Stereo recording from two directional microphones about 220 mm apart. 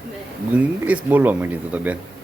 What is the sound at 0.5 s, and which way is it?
Speech, 5° right (ahead or behind).